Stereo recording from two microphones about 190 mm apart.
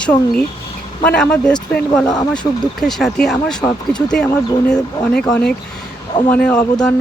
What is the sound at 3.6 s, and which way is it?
Speech, 20° left (ahead or behind).